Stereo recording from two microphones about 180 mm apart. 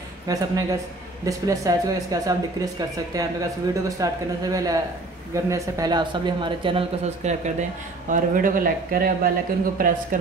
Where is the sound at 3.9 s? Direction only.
20° right (ahead or behind).